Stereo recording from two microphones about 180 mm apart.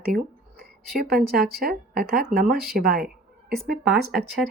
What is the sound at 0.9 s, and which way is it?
Speech, 55° right (ahead or behind).